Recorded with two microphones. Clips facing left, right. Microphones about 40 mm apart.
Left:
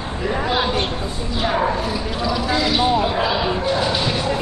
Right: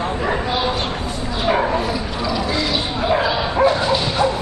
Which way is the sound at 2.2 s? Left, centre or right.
Centre.